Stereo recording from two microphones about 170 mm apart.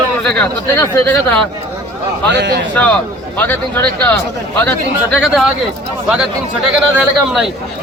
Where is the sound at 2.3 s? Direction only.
90° right.